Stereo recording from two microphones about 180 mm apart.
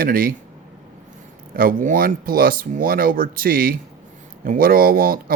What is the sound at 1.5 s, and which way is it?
Speech, 50° right (ahead or behind).